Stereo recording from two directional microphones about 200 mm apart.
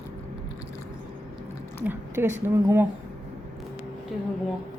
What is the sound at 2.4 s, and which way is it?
Speech, 15° right (ahead or behind).